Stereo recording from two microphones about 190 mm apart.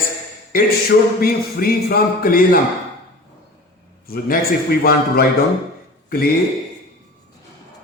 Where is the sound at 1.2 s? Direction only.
50° left (ahead or behind).